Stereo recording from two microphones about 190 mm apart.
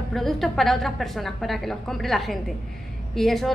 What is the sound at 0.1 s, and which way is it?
A woman's voice, centre (ahead or behind).